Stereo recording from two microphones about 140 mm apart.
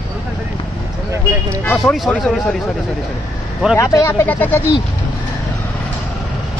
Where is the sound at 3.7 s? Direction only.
20° left (ahead or behind).